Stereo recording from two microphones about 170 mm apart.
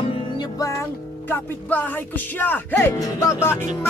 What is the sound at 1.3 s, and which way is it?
Speech, 10° left (ahead or behind).